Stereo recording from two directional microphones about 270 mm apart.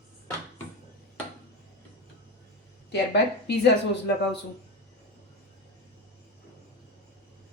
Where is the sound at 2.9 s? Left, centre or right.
Left.